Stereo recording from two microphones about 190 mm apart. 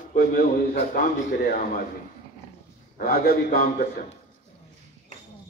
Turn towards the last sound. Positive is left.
turn(degrees=50)  # may be behind; listen again after turning